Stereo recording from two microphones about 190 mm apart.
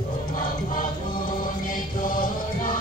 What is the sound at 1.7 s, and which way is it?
Mantra, 45° left (ahead or behind).